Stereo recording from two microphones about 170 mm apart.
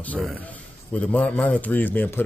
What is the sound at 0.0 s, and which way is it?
A man's voice, 5° left (ahead or behind).